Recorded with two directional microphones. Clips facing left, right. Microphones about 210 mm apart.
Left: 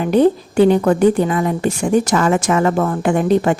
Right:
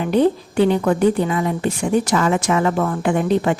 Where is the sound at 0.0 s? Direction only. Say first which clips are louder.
Left 3 dB; 45° left (ahead or behind).